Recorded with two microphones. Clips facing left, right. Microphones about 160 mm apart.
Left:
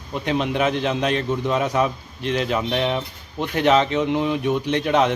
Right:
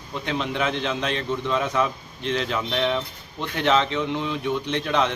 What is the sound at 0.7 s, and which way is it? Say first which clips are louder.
Speech: left 4 dB; 45° left (ahead or behind).